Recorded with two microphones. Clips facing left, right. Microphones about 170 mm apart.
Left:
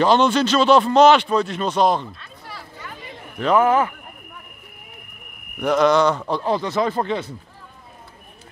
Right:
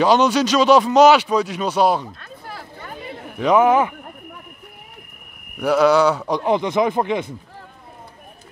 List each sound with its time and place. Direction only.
0.0 s speech: 10° right (ahead or behind)
3.1 s a sound: 15° right (ahead or behind)
5.6 s speech: 5° right (ahead or behind)